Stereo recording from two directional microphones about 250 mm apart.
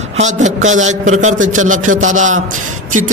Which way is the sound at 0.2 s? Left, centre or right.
Right.